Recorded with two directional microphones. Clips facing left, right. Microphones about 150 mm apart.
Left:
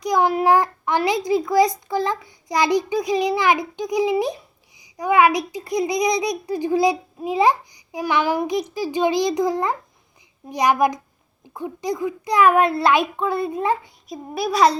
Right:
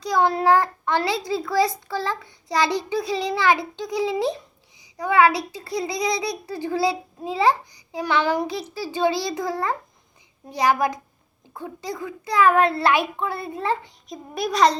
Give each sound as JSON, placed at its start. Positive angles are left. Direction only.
{"t": 0.0, "sound": "a child's voice", "side_deg": 15}